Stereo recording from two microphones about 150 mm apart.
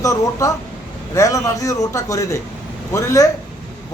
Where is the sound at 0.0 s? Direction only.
20° left (ahead or behind).